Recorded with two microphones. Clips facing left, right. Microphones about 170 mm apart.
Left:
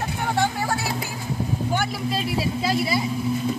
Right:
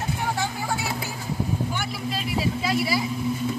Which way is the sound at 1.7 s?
45° left (ahead or behind).